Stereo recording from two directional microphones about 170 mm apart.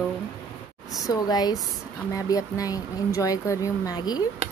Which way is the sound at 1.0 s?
25° left (ahead or behind).